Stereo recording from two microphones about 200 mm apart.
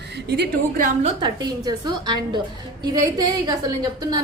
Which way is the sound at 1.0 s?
20° right (ahead or behind).